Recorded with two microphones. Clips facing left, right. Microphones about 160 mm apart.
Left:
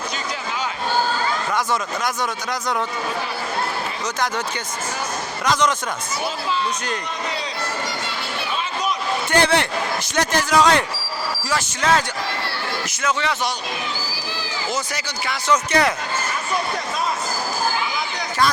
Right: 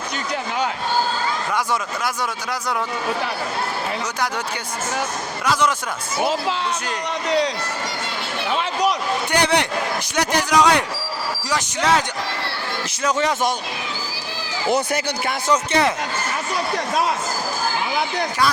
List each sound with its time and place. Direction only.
5.5 s a man's voice: 10° right (ahead or behind)
6.2 s speech: 75° right (ahead or behind)
8.5 s a sound: 80° right
9.3 s a man's voice: 15° right (ahead or behind)
13.0 s speech: 40° right (ahead or behind)
14.7 s speech: 55° right (ahead or behind)
15.5 s speech: 25° right (ahead or behind)